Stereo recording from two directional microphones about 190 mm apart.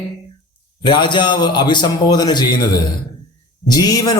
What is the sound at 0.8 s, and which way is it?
Speech, 25° left (ahead or behind).